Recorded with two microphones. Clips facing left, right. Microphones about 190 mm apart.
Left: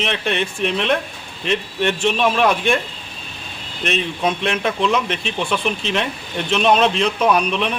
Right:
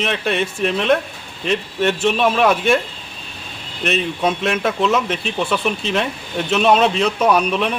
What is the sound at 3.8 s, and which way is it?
Speech, 5° right (ahead or behind).